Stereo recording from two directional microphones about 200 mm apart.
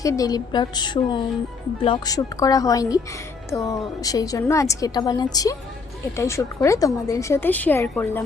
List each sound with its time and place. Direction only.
0.0 s a woman's voice: 15° left (ahead or behind)